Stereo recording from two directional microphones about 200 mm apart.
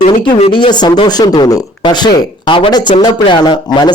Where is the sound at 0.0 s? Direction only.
25° left (ahead or behind).